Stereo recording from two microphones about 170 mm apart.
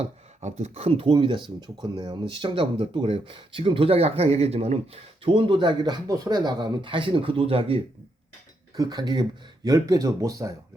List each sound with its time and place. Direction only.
0.0 s speech: 40° right (ahead or behind)
8.7 s speech: 25° right (ahead or behind)